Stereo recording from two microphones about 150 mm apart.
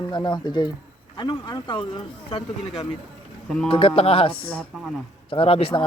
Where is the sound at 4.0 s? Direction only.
40° left (ahead or behind).